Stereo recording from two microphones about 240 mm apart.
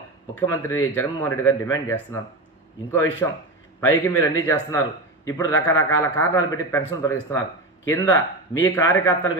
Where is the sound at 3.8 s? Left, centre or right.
Left.